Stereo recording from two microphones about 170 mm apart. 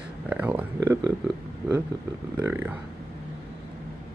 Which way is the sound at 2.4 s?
10° right (ahead or behind).